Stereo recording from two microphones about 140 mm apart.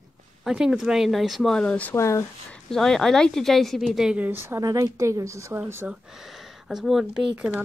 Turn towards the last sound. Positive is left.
turn(degrees=-5)  # may be behind; listen again after turning